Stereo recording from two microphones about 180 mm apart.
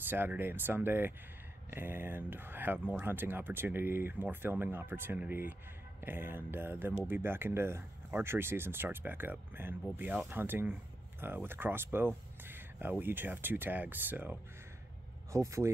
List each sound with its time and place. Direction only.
0.1 s speech: 10° right (ahead or behind)